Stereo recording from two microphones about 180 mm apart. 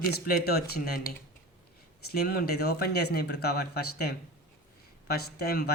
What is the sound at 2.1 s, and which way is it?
Speech, 60° left (ahead or behind).